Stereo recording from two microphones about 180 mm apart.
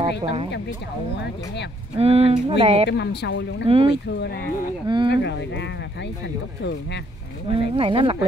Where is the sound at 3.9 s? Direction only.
70° left (ahead or behind).